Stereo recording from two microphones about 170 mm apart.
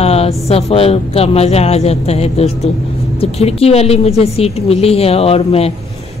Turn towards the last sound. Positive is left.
turn(degrees=35)  # may be behind; listen again after turning